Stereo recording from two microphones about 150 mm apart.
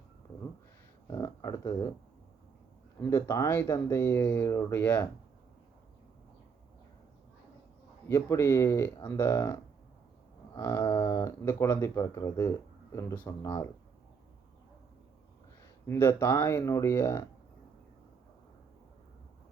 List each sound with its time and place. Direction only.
1.0 s speech: 20° left (ahead or behind)
3.0 s speech: 15° left (ahead or behind)
8.0 s speech: 15° left (ahead or behind)
10.6 s speech: 20° left (ahead or behind)
10.8 s speech: 30° left (ahead or behind)
15.9 s speech: 15° left (ahead or behind)